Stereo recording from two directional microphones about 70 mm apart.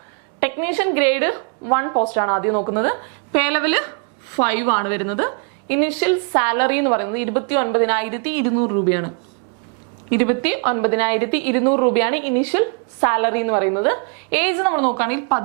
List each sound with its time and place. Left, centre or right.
0.3 s a woman's voice: centre